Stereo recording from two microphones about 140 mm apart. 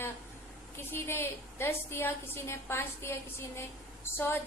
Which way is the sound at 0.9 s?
15° left (ahead or behind).